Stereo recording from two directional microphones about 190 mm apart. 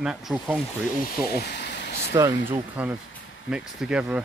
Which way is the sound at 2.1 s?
15° right (ahead or behind).